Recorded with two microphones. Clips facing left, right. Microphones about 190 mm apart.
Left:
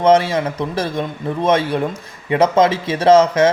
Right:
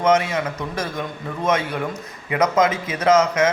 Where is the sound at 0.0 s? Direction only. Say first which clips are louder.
Left 5 dB; 30° left (ahead or behind).